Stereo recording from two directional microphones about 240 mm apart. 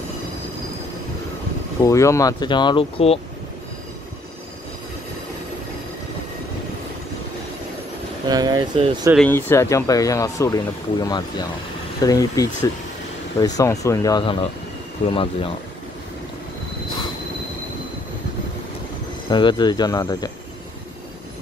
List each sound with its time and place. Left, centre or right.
1.8 s speech: centre
8.3 s speech: centre
9.1 s speech: centre; by 15.5 s left
19.2 s speech: centre